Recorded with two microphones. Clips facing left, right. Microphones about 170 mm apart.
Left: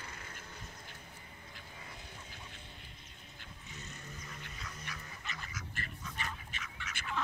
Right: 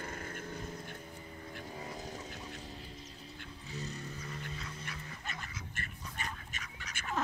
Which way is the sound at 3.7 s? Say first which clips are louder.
Right 9 dB; 35° right (ahead or behind).